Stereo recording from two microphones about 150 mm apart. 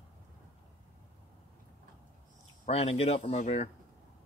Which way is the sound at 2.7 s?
40° left (ahead or behind).